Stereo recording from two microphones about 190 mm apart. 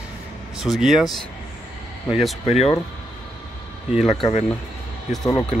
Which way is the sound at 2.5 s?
35° left (ahead or behind).